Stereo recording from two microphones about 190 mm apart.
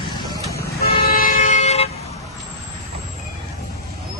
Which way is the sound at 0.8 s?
50° left (ahead or behind).